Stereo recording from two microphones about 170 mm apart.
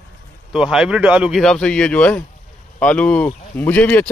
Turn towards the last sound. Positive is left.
turn(degrees=10)  # may be behind; listen again after turning